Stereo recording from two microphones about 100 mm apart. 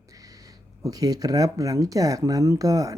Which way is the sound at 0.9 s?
40° right (ahead or behind).